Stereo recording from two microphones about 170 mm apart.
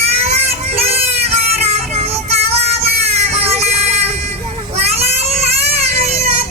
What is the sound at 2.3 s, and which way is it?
Child singing, 40° right (ahead or behind).